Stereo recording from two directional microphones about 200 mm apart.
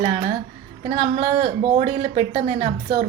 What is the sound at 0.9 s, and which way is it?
Speech, 30° right (ahead or behind).